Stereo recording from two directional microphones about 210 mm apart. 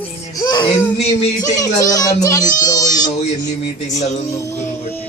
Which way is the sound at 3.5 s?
35° left (ahead or behind).